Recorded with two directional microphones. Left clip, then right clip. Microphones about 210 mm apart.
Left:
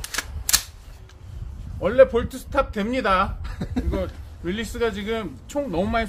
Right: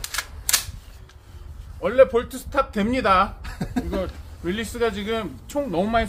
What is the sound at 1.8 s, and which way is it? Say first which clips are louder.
Speech: even; 15° right (ahead or behind).